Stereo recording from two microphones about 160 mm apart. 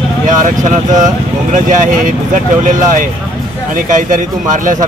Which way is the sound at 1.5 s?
55° right (ahead or behind).